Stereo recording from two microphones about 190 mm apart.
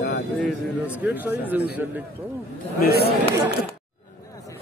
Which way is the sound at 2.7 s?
55° left (ahead or behind).